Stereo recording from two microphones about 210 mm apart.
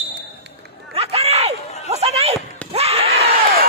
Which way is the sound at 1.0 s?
30° right (ahead or behind).